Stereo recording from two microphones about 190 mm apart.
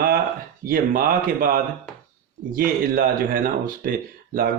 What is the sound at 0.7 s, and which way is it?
Speech, 50° right (ahead or behind).